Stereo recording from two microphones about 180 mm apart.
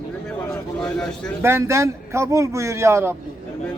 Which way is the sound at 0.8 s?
5° left (ahead or behind).